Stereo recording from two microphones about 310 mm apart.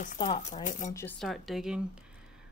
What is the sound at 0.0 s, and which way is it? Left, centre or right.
Speech, left.